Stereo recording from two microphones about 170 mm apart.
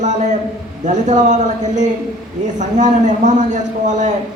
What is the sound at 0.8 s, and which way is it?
A man's voice, 45° right (ahead or behind).